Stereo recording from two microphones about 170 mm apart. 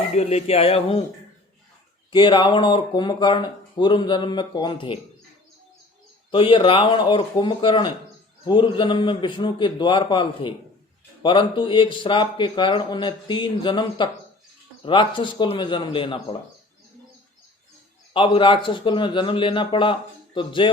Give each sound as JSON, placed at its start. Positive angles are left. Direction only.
{"t": 0.1, "sound": "speech", "side_deg": 40}
{"t": 2.1, "sound": "speech", "side_deg": 30}
{"t": 6.3, "sound": "speech", "side_deg": 30}
{"t": 18.1, "sound": "speech", "side_deg": 30}